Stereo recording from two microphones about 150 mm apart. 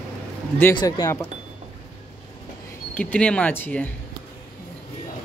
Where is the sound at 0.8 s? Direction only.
25° left (ahead or behind).